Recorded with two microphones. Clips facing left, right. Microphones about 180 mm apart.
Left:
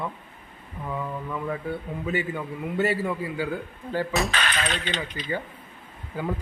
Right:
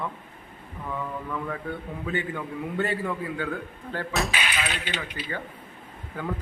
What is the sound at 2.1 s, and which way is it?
A man's voice, 5° left (ahead or behind).